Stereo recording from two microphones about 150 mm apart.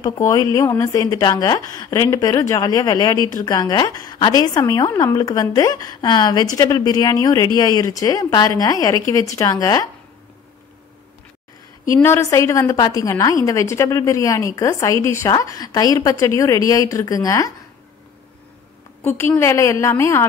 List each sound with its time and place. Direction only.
0.0 s a woman's voice: 25° left (ahead or behind)
11.9 s a woman's voice: 20° left (ahead or behind)
19.0 s a woman's voice: 15° left (ahead or behind)